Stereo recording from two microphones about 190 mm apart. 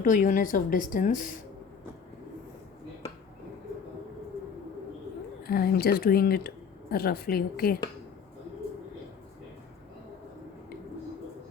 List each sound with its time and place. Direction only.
0.0 s a woman's voice: 45° left (ahead or behind)
5.4 s a woman's voice: 55° left (ahead or behind)